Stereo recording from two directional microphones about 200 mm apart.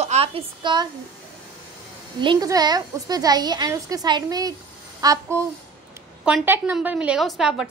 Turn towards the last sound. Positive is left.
turn(degrees=0)  # may be behind; listen again after turning